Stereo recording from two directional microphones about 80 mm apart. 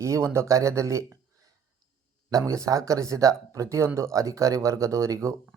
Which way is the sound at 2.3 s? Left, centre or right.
Right.